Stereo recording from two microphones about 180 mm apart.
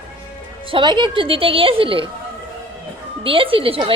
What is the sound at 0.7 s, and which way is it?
Speech, 25° right (ahead or behind).